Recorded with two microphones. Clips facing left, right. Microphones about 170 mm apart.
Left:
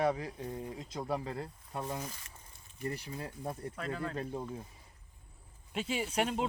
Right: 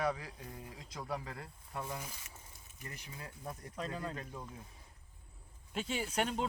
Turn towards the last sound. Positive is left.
turn(degrees=5)  # may be behind; listen again after turning